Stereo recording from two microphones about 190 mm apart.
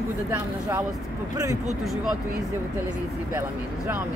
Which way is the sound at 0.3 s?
10° right (ahead or behind).